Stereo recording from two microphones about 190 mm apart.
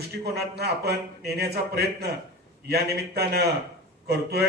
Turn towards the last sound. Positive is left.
turn(degrees=-60)  # may be behind; listen again after turning